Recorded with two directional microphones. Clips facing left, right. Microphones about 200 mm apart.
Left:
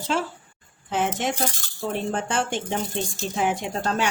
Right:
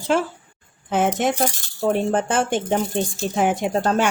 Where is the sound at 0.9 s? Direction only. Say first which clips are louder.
Right 5 dB; 50° right (ahead or behind).